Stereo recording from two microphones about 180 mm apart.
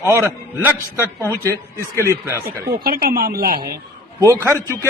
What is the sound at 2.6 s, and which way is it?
Speech, 55° right (ahead or behind).